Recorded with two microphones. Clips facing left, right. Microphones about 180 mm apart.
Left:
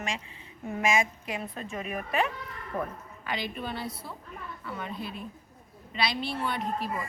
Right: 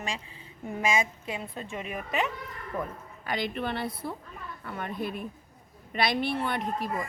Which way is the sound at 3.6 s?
60° right (ahead or behind).